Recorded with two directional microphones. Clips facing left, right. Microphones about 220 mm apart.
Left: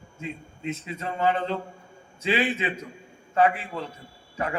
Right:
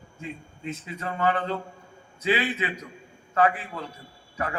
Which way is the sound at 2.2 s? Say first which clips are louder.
Left 1 dB; 25° left (ahead or behind).